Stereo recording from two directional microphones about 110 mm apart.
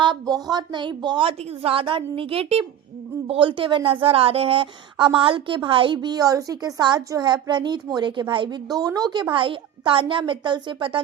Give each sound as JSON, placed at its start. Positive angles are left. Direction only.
{"t": 0.0, "sound": "a woman's voice", "side_deg": -40}
{"t": 3.2, "sound": "a woman's voice", "side_deg": -50}
{"t": 8.7, "sound": "a woman's voice", "side_deg": -35}
{"t": 9.3, "sound": "a woman's voice", "side_deg": -50}